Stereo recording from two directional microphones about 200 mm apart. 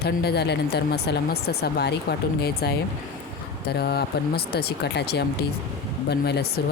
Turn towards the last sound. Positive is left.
turn(degrees=55)  # may be behind; listen again after turning